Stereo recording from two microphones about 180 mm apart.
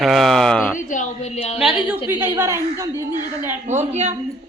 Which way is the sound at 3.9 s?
40° right (ahead or behind).